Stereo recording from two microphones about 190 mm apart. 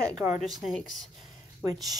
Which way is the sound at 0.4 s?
Centre (ahead or behind).